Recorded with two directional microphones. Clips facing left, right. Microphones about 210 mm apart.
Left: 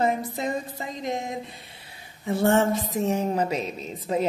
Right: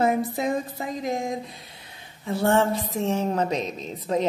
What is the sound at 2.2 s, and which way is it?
A woman's voice, 15° left (ahead or behind).